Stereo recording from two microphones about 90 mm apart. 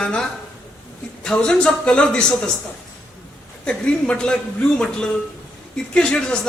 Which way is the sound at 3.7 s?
10° left (ahead or behind).